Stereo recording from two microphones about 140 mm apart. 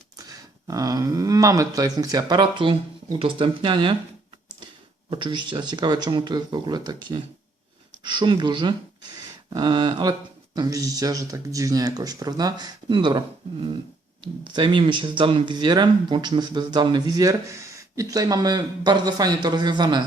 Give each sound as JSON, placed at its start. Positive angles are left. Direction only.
{"t": 0.2, "sound": "speech", "side_deg": -25}
{"t": 5.1, "sound": "speech", "side_deg": -35}